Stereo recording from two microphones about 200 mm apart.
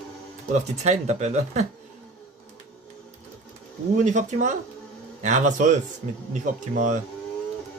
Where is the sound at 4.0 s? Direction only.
35° right (ahead or behind).